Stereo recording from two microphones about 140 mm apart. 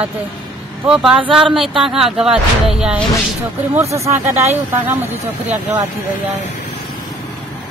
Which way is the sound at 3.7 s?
20° right (ahead or behind).